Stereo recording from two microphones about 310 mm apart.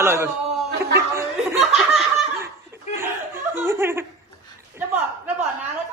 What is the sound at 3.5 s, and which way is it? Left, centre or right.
Giggle, centre.